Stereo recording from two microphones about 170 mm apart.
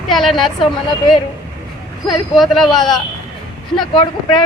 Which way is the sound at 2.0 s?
Centre (ahead or behind).